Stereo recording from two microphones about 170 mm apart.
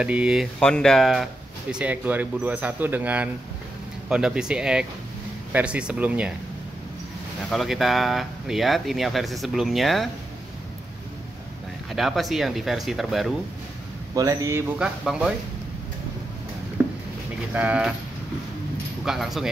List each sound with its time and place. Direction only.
0.0 s speech: 5° right (ahead or behind)
7.4 s speech: centre (ahead or behind)
11.9 s speech: centre (ahead or behind)
14.1 s speech: 20° right (ahead or behind)
14.8 s speech: 5° right (ahead or behind)
16.8 s a sound: 10° right (ahead or behind)
17.6 s speech: 10° right (ahead or behind)
19.0 s speech: centre (ahead or behind)